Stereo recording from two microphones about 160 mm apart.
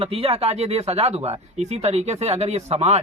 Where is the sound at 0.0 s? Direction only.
40° right (ahead or behind).